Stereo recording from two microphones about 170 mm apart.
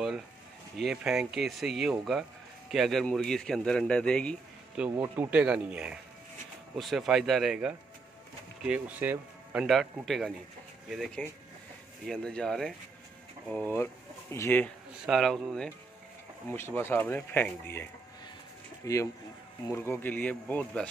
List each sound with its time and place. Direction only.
0.7 s speech: centre (ahead or behind)
4.9 s speech: 15° right (ahead or behind); by 14.7 s 15° left (ahead or behind)
15.0 s speech: centre (ahead or behind)
16.4 s speech: 15° left (ahead or behind)
18.8 s speech: 20° left (ahead or behind)